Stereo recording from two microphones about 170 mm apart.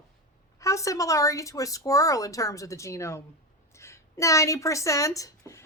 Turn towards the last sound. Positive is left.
turn(degrees=20)  # may be behind; listen again after turning